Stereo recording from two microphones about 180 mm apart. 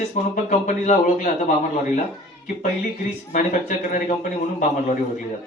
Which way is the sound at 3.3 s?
45° left (ahead or behind).